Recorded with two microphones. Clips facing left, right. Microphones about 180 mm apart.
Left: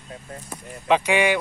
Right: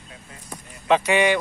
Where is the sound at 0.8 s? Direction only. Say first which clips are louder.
Right 1 dB; 10° left (ahead or behind).